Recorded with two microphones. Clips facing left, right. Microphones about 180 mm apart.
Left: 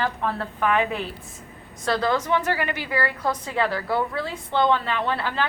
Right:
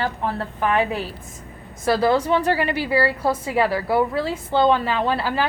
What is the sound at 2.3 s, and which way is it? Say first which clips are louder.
Speech: right 3 dB; 20° right (ahead or behind).